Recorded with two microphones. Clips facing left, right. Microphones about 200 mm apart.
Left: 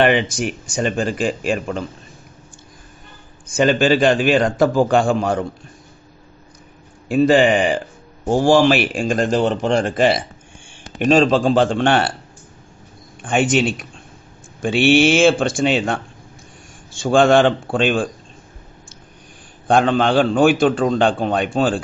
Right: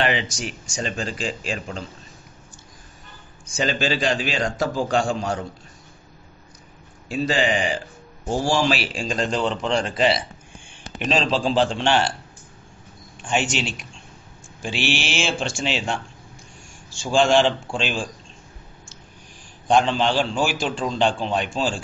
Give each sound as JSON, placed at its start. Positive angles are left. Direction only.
{"t": 0.0, "sound": "a man's voice", "side_deg": 55}
{"t": 3.5, "sound": "a man's voice", "side_deg": 55}
{"t": 7.1, "sound": "a man's voice", "side_deg": 55}
{"t": 13.2, "sound": "a man's voice", "side_deg": 55}
{"t": 15.1, "sound": "a man's voice", "side_deg": 55}
{"t": 17.0, "sound": "a man's voice", "side_deg": 55}
{"t": 19.7, "sound": "a man's voice", "side_deg": 55}